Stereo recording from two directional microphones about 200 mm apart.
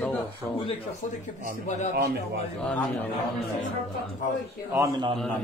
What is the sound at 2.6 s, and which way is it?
Speech, 5° left (ahead or behind).